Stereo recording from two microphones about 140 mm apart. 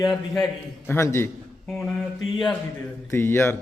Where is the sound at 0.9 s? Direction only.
20° left (ahead or behind).